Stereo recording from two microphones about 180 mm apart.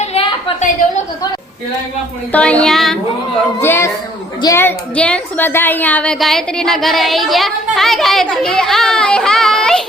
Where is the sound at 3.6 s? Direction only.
15° left (ahead or behind).